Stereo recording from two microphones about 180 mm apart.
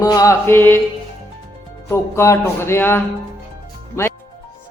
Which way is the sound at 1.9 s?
15° left (ahead or behind).